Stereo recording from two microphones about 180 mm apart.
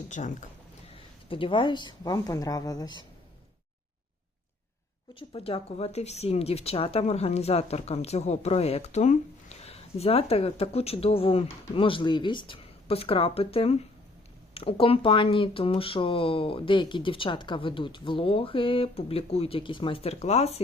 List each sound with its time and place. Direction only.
0.1 s speech: 40° left (ahead or behind)
0.9 s speech: 30° left (ahead or behind)
5.3 s speech: 30° left (ahead or behind)